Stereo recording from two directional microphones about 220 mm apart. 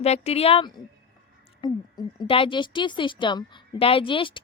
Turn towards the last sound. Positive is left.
turn(degrees=20)  # may be behind; listen again after turning